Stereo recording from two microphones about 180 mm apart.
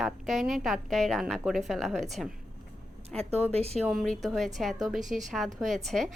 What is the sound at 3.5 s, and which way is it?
Speech, 35° right (ahead or behind).